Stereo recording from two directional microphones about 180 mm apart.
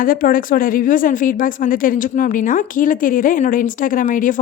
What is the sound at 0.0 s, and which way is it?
Speech, 50° left (ahead or behind).